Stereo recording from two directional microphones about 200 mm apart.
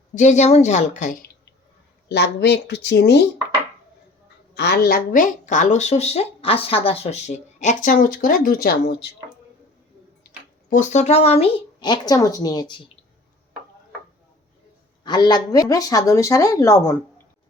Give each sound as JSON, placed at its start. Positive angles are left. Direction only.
{"t": 0.1, "sound": "a woman's voice", "side_deg": 35}
{"t": 2.0, "sound": "speech", "side_deg": 55}
{"t": 4.5, "sound": "a woman's voice", "side_deg": 55}
{"t": 10.2, "sound": "speech", "side_deg": 40}
{"t": 15.0, "sound": "a man's voice", "side_deg": 20}